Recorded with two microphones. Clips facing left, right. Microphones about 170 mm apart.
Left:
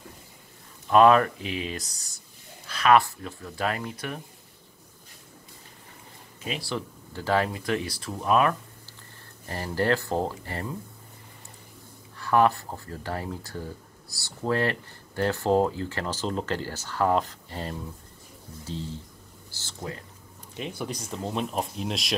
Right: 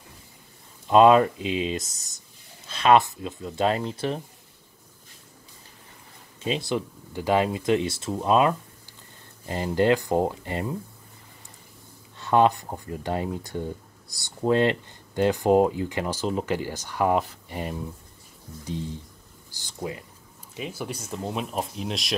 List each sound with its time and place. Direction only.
0.8 s speech: 20° right (ahead or behind)
6.4 s speech: 20° right (ahead or behind)
12.2 s speech: 20° right (ahead or behind)
20.5 s speech: 5° right (ahead or behind)